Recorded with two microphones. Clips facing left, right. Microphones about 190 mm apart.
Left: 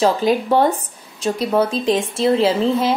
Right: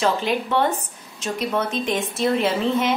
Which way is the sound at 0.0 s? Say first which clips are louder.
Left 5 dB; 40° left (ahead or behind).